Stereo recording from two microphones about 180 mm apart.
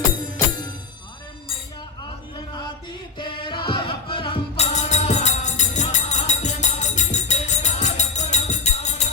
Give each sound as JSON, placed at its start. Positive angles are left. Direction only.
{"t": 3.2, "sound": "music", "side_deg": 25}